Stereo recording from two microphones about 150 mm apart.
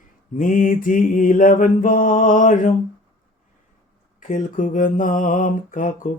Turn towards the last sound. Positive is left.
turn(degrees=60)  # may be behind; listen again after turning